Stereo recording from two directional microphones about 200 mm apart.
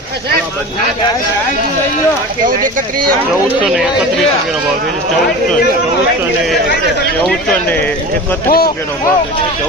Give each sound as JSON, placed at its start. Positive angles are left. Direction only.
{"t": 7.3, "sound": "speech", "side_deg": 5}
{"t": 8.4, "sound": "speech", "side_deg": 50}